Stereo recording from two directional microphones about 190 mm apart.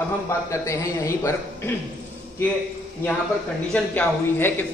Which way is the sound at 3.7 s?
10° left (ahead or behind).